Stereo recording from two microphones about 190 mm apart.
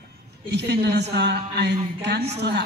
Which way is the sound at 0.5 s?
60° right (ahead or behind).